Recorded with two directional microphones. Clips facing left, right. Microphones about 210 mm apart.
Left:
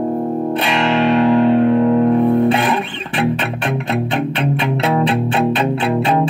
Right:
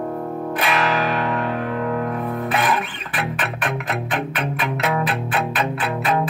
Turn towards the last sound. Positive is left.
turn(degrees=30)  # may be behind; listen again after turning